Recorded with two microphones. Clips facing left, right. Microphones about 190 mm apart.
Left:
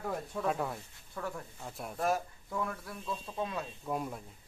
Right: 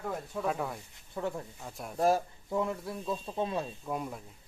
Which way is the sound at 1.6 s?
Centre (ahead or behind).